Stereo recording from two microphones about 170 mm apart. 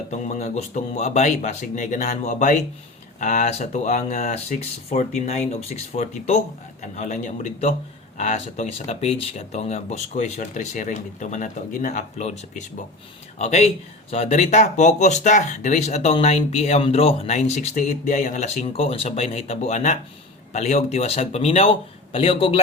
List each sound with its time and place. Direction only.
0.1 s speech: 45° left (ahead or behind)